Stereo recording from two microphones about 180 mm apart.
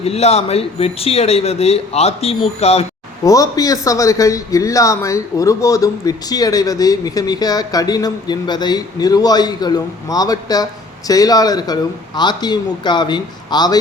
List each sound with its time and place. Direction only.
0.0 s speech: 35° left (ahead or behind)
3.2 s speech: 20° left (ahead or behind)